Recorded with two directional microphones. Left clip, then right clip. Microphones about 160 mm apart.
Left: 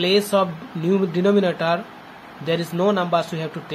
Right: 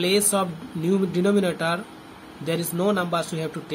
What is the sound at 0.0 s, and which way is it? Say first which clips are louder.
Speech: left 4 dB; 15° right (ahead or behind).